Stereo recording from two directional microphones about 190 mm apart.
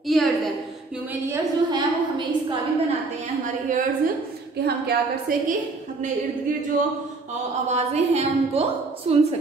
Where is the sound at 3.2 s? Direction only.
45° right (ahead or behind).